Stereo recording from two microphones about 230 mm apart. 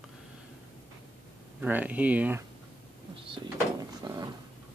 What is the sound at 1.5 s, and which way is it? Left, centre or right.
Speech, centre.